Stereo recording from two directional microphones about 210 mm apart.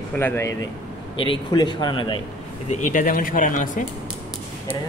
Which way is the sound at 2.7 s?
35° left (ahead or behind).